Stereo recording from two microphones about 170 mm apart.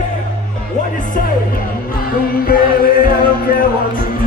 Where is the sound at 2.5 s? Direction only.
60° left (ahead or behind).